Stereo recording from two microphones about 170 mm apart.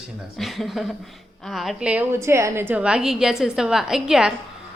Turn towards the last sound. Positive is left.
turn(degrees=-5)  # may be behind; listen again after turning